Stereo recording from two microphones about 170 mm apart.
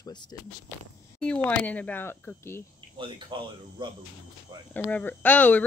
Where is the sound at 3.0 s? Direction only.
30° right (ahead or behind).